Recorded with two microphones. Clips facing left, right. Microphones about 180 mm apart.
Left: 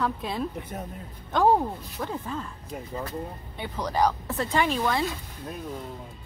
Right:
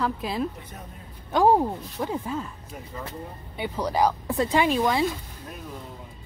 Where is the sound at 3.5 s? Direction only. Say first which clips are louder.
Right 3 dB; 10° right (ahead or behind).